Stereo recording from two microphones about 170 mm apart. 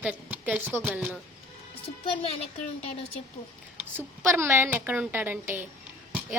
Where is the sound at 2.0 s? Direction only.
30° left (ahead or behind).